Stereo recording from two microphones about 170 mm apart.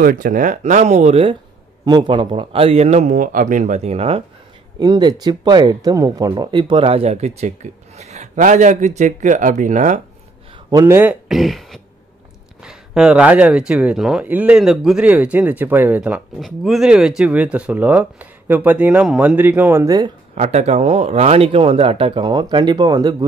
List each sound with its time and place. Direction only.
0.0 s speech: 55° right (ahead or behind); by 1.3 s 40° right (ahead or behind)
1.9 s speech: 25° right (ahead or behind)
4.7 s speech: 25° right (ahead or behind); by 10.0 s 45° right (ahead or behind)
10.7 s speech: 15° right (ahead or behind)
11.2 s speech: centre (ahead or behind); by 20.1 s 20° right (ahead or behind)
20.3 s speech: 40° right (ahead or behind); by 23.1 s 25° right (ahead or behind)